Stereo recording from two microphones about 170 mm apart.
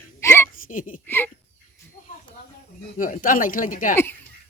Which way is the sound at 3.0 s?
55° left (ahead or behind).